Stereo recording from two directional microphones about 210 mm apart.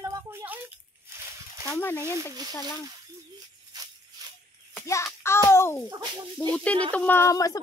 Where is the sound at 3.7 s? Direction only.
20° right (ahead or behind).